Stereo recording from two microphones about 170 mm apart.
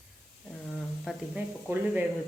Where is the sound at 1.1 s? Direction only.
Centre (ahead or behind).